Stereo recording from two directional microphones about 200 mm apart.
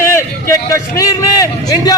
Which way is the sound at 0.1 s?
15° left (ahead or behind).